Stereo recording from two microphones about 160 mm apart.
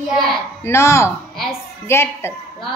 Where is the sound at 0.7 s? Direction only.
15° left (ahead or behind).